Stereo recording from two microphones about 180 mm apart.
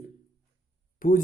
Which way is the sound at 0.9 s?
50° left (ahead or behind).